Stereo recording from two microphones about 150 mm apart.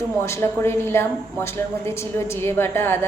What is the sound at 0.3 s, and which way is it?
A woman's voice, 15° left (ahead or behind).